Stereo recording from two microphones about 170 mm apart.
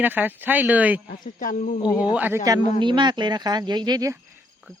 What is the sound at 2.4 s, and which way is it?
Speech, 25° right (ahead or behind).